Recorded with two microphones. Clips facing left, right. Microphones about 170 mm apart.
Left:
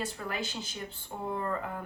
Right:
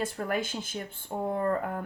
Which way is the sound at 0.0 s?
50° right (ahead or behind).